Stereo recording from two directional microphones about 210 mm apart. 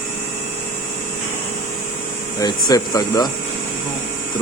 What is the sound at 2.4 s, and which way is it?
Speech, 15° left (ahead or behind).